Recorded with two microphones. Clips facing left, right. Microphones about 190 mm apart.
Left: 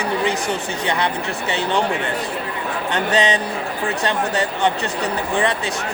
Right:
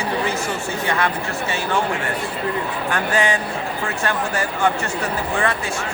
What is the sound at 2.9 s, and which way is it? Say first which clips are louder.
Speech: left 2 dB; 20° left (ahead or behind).